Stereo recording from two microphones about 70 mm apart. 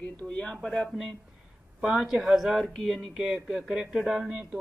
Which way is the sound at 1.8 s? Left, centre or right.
Centre.